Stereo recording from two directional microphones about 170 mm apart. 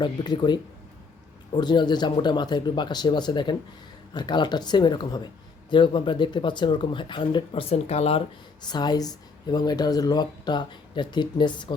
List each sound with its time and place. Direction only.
0.0 s speech: 25° left (ahead or behind)
8.6 s speech: 25° left (ahead or behind)